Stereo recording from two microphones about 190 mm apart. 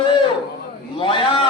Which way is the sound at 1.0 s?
30° left (ahead or behind).